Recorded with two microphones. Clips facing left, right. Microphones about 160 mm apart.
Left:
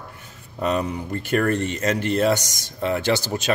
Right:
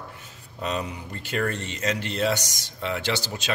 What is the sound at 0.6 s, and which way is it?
Speech, 50° left (ahead or behind).